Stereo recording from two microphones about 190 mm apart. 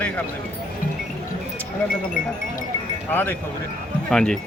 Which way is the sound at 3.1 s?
10° left (ahead or behind).